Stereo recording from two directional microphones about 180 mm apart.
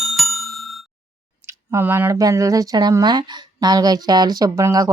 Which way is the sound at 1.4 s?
15° right (ahead or behind).